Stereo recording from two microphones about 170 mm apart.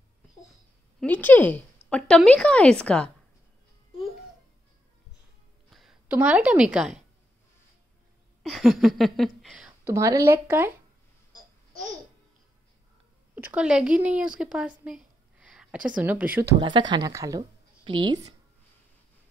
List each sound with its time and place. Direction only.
1.0 s a woman's voice: 10° left (ahead or behind)
5.7 s a woman's voice: centre (ahead or behind)
8.4 s speech: centre (ahead or behind)
9.8 s speech: 20° right (ahead or behind)
13.3 s a woman's voice: 10° right (ahead or behind)
16.5 s speech: 25° right (ahead or behind)